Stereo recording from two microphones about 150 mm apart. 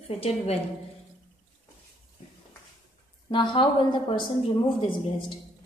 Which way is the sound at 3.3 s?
30° left (ahead or behind).